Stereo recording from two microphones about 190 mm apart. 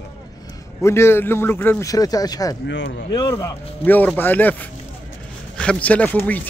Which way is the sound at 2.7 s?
70° left (ahead or behind).